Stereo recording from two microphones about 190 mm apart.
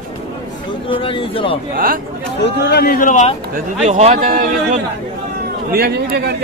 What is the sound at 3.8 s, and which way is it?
Speech, 40° right (ahead or behind).